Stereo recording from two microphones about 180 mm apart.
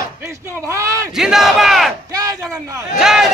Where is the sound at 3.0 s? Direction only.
Centre (ahead or behind).